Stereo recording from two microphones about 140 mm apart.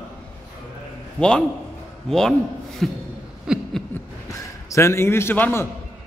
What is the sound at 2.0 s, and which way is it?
Speech, 5° left (ahead or behind).